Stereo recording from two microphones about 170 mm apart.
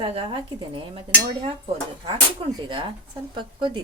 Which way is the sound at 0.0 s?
30° right (ahead or behind).